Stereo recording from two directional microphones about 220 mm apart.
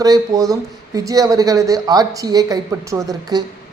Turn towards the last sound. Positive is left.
turn(degrees=-15)  # may be behind; listen again after turning